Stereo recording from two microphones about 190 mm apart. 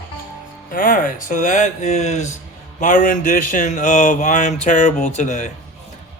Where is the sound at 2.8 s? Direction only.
45° left (ahead or behind).